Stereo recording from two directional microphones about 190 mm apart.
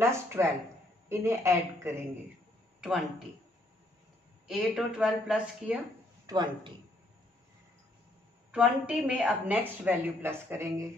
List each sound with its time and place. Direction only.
0.0 s a woman's voice: 15° right (ahead or behind)
4.5 s speech: centre (ahead or behind)
6.2 s speech: 25° right (ahead or behind)
8.5 s a woman's voice: 5° right (ahead or behind)